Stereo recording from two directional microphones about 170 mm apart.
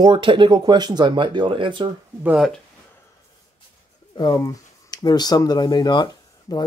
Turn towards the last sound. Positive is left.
turn(degrees=25)  # may be behind; listen again after turning